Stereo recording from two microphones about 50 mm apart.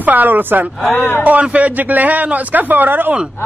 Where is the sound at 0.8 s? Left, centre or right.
Left.